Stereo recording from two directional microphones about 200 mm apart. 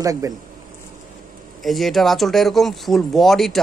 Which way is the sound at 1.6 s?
Centre (ahead or behind).